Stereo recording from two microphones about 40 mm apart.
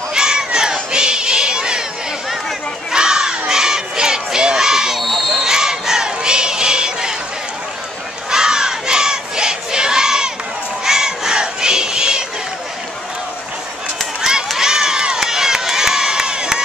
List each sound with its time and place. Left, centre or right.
0.1 s a sound: centre
2.9 s crowd: centre
8.3 s crowd: centre
14.6 s crowd: centre